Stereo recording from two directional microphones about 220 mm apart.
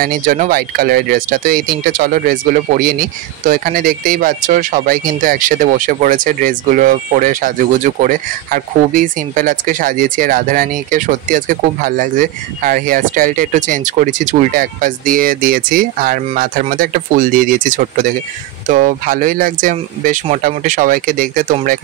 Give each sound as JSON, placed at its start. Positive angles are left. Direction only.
{"t": 0.0, "sound": "speech", "side_deg": -40}